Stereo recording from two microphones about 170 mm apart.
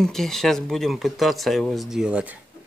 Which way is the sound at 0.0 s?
Centre (ahead or behind).